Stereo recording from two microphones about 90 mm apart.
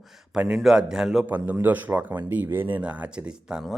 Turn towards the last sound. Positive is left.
turn(degrees=-10)  # may be behind; listen again after turning